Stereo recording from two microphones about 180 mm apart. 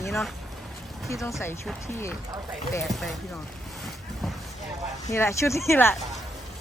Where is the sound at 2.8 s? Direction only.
Centre (ahead or behind).